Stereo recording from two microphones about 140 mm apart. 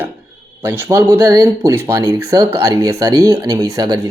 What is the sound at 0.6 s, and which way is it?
Speech, 15° right (ahead or behind).